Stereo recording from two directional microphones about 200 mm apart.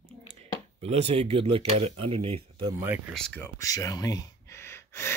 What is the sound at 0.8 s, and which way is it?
Speech, 30° right (ahead or behind).